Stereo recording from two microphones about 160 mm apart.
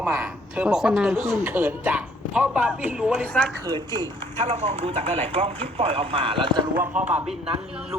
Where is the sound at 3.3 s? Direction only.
5° left (ahead or behind).